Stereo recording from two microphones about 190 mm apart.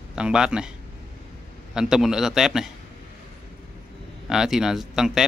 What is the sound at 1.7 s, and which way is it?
Speech, 5° right (ahead or behind).